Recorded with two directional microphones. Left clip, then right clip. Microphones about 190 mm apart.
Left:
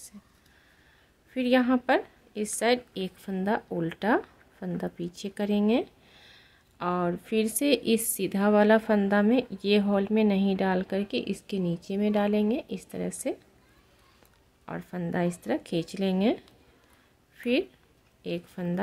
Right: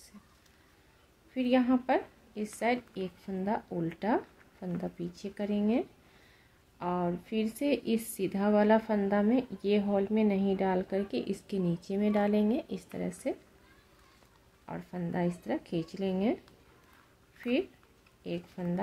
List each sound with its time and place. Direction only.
1.3 s a woman's voice: 35° left (ahead or behind)
14.7 s a woman's voice: 30° left (ahead or behind)
17.4 s a woman's voice: 30° left (ahead or behind)